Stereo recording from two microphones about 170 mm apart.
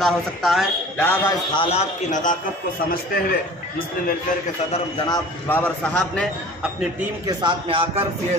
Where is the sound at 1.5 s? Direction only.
35° left (ahead or behind).